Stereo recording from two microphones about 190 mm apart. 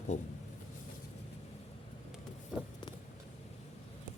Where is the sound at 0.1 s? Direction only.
40° left (ahead or behind).